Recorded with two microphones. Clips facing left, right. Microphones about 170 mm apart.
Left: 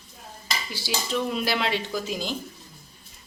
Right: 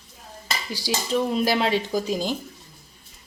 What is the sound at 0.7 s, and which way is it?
Speech, 40° right (ahead or behind).